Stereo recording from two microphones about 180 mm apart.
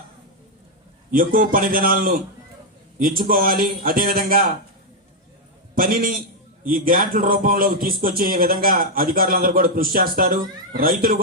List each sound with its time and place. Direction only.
1.1 s speech: 50° right (ahead or behind)
5.7 s speech: 55° right (ahead or behind)